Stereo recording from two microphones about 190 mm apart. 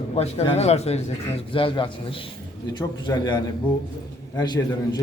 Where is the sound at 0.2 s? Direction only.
35° left (ahead or behind).